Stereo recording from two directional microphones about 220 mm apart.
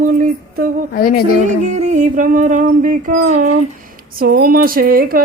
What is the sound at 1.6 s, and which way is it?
Speech, 30° right (ahead or behind).